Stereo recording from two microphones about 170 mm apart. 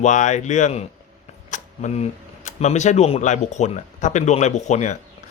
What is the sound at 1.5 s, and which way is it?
Camera, 45° left (ahead or behind).